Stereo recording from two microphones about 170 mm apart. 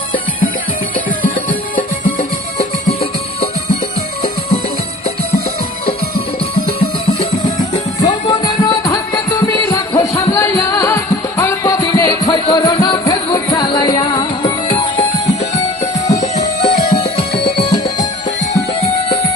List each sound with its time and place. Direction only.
7.9 s music: 25° left (ahead or behind)